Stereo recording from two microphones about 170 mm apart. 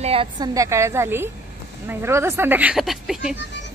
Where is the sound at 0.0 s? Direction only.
35° right (ahead or behind).